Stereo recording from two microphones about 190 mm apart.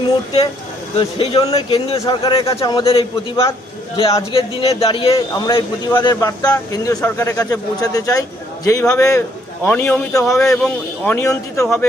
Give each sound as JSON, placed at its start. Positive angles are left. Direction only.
{"t": 0.9, "sound": "speech", "side_deg": 30}
{"t": 10.2, "sound": "speech", "side_deg": 0}